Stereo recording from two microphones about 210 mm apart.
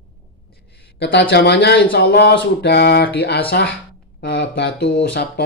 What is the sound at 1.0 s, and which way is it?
Speech, 50° left (ahead or behind).